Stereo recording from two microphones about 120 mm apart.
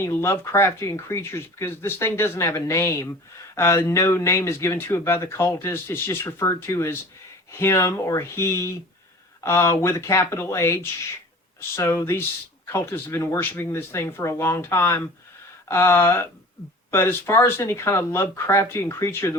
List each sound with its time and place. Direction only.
0.0 s speech: 20° left (ahead or behind)